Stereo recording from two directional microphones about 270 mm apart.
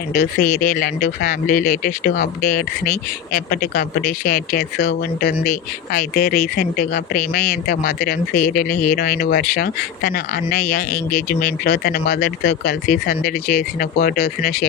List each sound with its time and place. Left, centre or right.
0.1 s speech: left